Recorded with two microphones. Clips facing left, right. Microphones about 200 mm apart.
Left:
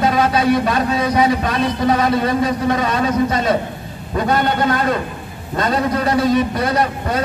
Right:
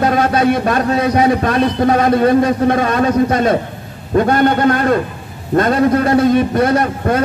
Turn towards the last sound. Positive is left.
turn(degrees=-50)  # may be behind; listen again after turning